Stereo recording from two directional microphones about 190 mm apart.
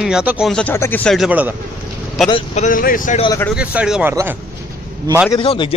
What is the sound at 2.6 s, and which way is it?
Speech, 45° left (ahead or behind).